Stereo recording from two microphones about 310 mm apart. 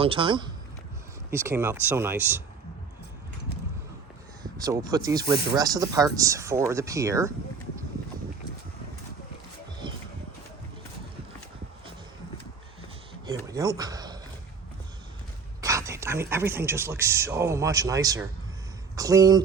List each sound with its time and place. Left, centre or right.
0.0 s speech: centre
4.6 s speech: centre
13.5 s speech: centre
15.6 s speech: centre